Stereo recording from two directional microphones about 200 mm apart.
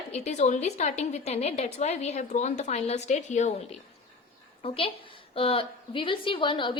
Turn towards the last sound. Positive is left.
turn(degrees=25)  # may be behind; listen again after turning